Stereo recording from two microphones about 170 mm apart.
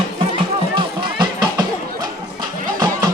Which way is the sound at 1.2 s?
25° right (ahead or behind).